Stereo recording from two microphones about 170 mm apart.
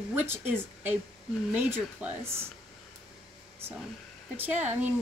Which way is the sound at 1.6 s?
10° right (ahead or behind).